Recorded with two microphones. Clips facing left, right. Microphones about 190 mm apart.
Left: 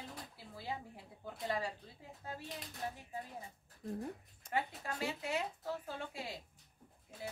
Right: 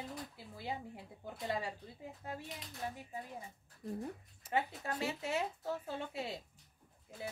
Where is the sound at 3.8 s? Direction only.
Centre (ahead or behind).